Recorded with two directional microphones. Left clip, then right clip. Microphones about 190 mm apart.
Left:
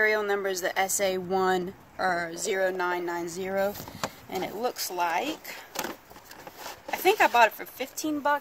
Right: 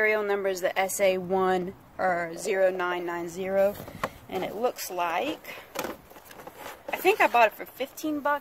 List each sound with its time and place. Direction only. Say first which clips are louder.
0.0 s speech: even; 30° right (ahead or behind)
6.9 s speech: even; 20° right (ahead or behind)